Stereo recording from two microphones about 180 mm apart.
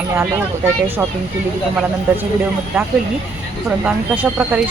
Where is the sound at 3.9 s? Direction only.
10° right (ahead or behind).